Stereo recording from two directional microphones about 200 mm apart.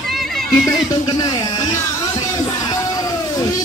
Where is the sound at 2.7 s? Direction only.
15° left (ahead or behind).